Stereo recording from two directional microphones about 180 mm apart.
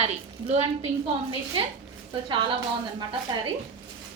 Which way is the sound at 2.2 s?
30° right (ahead or behind).